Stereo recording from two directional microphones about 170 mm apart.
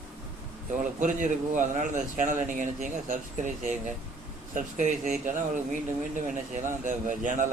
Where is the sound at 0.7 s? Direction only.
50° right (ahead or behind).